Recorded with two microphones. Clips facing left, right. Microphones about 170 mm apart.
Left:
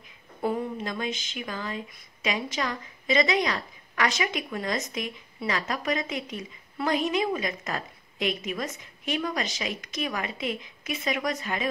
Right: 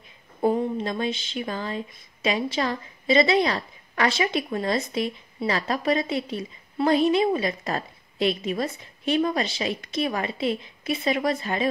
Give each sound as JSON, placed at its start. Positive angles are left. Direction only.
{"t": 0.4, "sound": "a woman's voice", "side_deg": -25}